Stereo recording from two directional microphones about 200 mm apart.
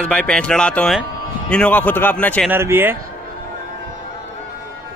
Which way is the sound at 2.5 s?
10° right (ahead or behind).